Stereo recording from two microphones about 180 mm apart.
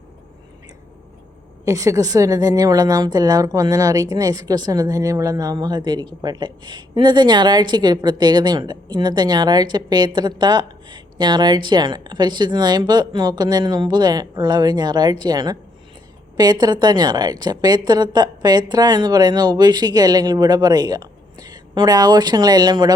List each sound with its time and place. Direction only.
1.6 s a woman's voice: 20° right (ahead or behind)